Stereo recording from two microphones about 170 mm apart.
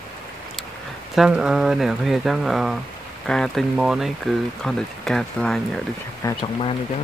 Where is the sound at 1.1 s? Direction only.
5° right (ahead or behind).